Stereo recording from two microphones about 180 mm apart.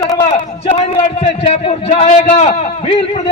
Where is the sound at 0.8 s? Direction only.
35° left (ahead or behind).